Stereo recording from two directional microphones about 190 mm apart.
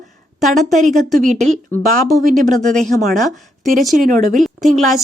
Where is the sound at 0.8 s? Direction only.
40° right (ahead or behind).